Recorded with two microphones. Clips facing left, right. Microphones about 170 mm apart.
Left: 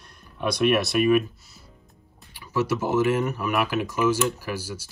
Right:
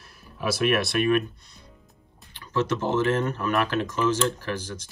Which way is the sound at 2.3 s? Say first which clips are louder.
Left 1 dB; 10° left (ahead or behind).